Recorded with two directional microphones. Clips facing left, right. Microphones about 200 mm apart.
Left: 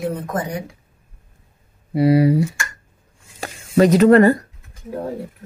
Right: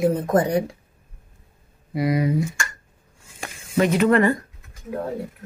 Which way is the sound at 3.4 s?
40° left (ahead or behind).